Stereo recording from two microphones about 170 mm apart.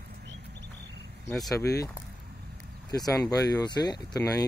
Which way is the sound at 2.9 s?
20° left (ahead or behind).